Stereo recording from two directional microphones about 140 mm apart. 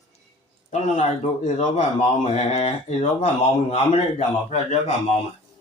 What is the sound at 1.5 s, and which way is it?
Speech, 60° left (ahead or behind).